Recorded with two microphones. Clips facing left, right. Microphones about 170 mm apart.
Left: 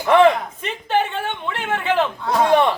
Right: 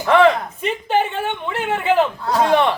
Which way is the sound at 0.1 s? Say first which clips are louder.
Even; 20° left (ahead or behind).